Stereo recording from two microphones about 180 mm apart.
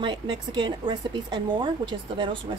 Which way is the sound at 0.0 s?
25° right (ahead or behind).